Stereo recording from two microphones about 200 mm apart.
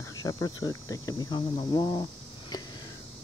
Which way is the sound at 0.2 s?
15° left (ahead or behind).